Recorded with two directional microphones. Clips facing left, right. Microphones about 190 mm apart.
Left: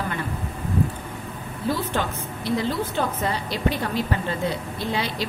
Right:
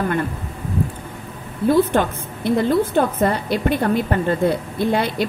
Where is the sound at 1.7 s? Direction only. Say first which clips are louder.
Right 9 dB; 55° right (ahead or behind).